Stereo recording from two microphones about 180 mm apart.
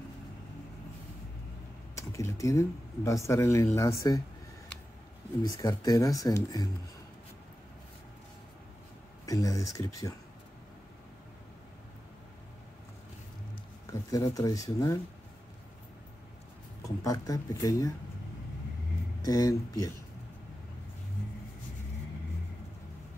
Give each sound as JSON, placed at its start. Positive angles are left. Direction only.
{"t": 2.0, "sound": "speech", "side_deg": 15}
{"t": 5.4, "sound": "speech", "side_deg": 20}
{"t": 9.2, "sound": "speech", "side_deg": 20}
{"t": 14.1, "sound": "speech", "side_deg": 20}
{"t": 16.8, "sound": "speech", "side_deg": 20}
{"t": 19.2, "sound": "speech", "side_deg": 20}